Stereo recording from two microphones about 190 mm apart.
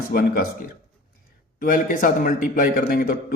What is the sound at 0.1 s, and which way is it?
A man's voice, 50° left (ahead or behind).